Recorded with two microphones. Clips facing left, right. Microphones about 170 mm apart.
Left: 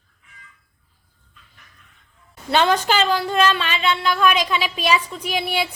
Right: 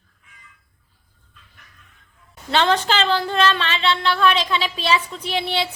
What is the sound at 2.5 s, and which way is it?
A woman's voice, 15° left (ahead or behind).